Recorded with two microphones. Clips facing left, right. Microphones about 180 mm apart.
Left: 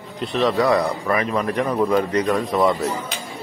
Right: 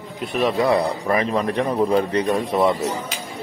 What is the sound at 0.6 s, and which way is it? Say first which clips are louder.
A man's voice: even; 30° right (ahead or behind).